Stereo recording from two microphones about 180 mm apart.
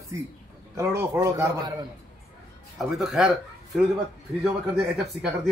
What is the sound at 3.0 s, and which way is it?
Speech, centre (ahead or behind).